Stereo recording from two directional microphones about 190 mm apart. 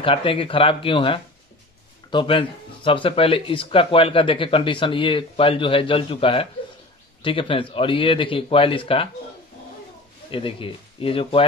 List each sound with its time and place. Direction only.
0.0 s speech: 30° left (ahead or behind)
10.3 s speech: 30° left (ahead or behind)